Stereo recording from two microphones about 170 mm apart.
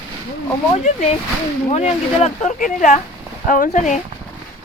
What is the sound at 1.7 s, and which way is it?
Speech, 40° left (ahead or behind).